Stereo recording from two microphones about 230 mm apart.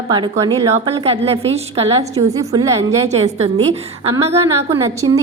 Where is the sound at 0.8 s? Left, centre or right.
Right.